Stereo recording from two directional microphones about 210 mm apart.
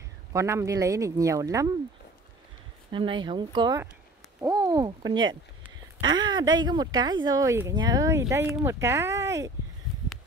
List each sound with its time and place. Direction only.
0.3 s speech: 15° right (ahead or behind)
2.9 s speech: 25° right (ahead or behind)